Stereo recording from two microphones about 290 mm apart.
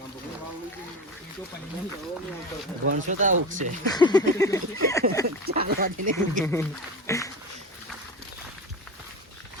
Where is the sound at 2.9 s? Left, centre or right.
Right.